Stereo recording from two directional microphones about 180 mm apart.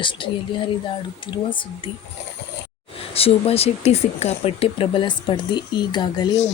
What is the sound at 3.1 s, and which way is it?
Speech, 35° left (ahead or behind).